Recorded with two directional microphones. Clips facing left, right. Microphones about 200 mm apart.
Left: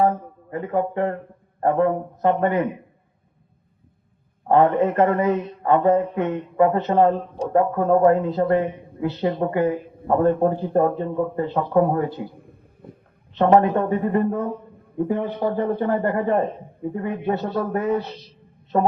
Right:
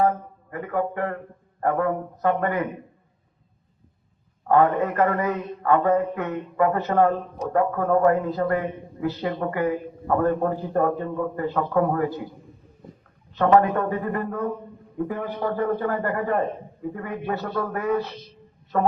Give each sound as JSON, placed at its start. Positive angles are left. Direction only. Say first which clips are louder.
{"t": 0.5, "sound": "a man's voice", "louder": "left 3 dB", "side_deg": 25}
{"t": 4.4, "sound": "a man's voice", "louder": "left 2 dB", "side_deg": 25}
{"t": 12.4, "sound": "a sound", "louder": "left 1 dB", "side_deg": 55}
{"t": 13.3, "sound": "a man's voice", "louder": "left 2 dB", "side_deg": 20}